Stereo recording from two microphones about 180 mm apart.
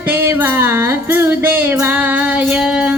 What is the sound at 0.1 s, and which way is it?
Music, 10° right (ahead or behind).